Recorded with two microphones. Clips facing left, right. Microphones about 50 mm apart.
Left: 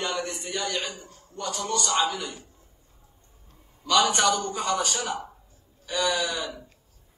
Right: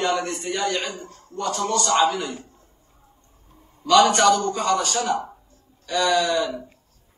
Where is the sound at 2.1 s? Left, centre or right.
Right.